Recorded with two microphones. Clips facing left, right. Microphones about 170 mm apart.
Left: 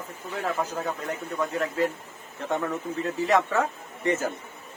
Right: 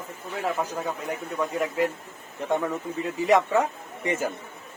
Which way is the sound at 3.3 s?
15° right (ahead or behind).